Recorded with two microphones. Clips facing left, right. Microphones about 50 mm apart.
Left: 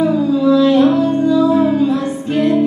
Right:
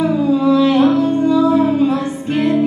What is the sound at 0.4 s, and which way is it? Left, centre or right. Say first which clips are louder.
Music: left 2 dB; right.